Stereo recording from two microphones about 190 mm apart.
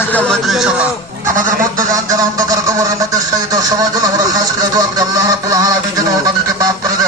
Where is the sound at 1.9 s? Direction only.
20° right (ahead or behind).